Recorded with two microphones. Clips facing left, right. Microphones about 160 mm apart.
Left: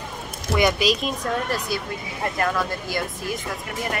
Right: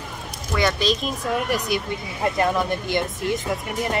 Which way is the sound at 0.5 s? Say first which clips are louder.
Left 1 dB; 10° left (ahead or behind).